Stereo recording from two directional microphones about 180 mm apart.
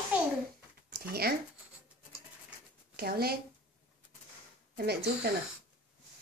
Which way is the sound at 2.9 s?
60° right (ahead or behind).